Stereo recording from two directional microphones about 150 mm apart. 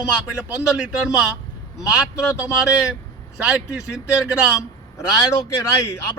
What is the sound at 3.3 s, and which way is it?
Speech, 5° right (ahead or behind).